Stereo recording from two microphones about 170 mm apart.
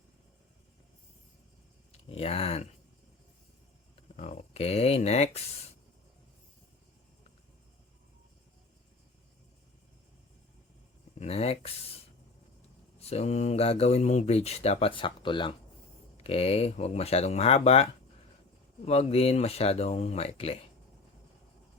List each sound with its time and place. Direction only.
1.9 s speech: 35° left (ahead or behind)
4.2 s speech: 40° left (ahead or behind)
11.2 s speech: 35° left (ahead or behind)
13.0 s speech: 40° left (ahead or behind)
18.9 s speech: 35° left (ahead or behind)